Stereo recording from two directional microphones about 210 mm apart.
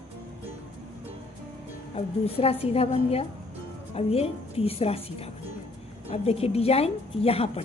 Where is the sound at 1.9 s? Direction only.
30° left (ahead or behind).